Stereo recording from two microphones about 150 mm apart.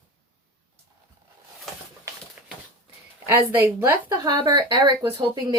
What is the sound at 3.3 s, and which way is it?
Speech, 15° right (ahead or behind).